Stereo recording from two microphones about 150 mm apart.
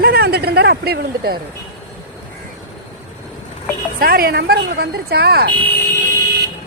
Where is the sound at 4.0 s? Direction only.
90° right.